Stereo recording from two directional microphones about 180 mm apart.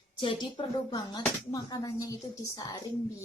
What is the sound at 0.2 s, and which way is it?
Speech, 25° left (ahead or behind).